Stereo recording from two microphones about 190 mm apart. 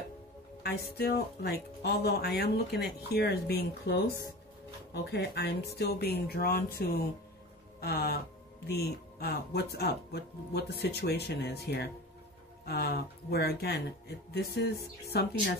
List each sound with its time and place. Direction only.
0.7 s speech: 60° left (ahead or behind)